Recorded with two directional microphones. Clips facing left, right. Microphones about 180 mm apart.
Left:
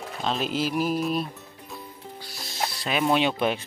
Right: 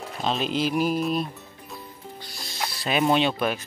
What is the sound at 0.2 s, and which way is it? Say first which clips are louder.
Speech: right 2 dB; centre (ahead or behind).